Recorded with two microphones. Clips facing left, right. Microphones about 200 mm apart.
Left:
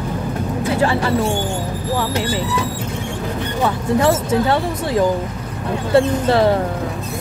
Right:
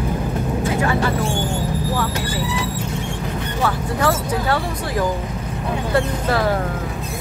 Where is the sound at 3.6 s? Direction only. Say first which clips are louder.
Left 5 dB; 25° left (ahead or behind).